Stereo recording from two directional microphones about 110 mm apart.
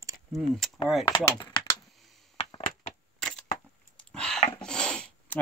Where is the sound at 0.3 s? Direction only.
Centre (ahead or behind).